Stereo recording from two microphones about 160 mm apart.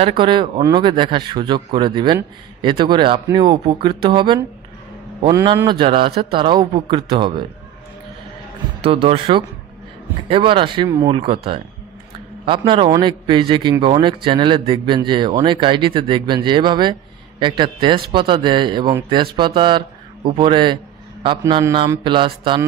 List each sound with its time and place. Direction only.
0.0 s a man's voice: 30° right (ahead or behind)
8.8 s a man's voice: 35° right (ahead or behind)
11.1 s a man's voice: 35° right (ahead or behind)